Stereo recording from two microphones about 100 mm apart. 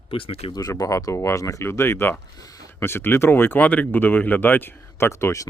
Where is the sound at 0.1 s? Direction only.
70° left (ahead or behind).